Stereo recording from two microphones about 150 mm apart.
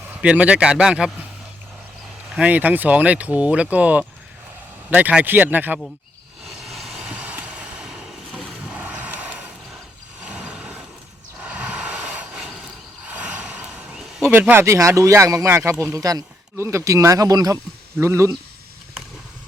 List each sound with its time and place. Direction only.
0.1 s speech: 10° right (ahead or behind)
2.3 s speech: 10° right (ahead or behind)
6.4 s vehicle: centre (ahead or behind)
10.2 s a sound: 10° right (ahead or behind)
14.3 s speech: 15° right (ahead or behind)